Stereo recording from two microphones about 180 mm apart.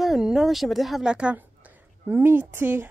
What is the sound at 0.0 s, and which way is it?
A woman's voice, centre (ahead or behind).